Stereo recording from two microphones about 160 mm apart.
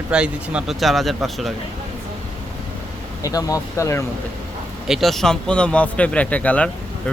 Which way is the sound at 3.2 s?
20° left (ahead or behind).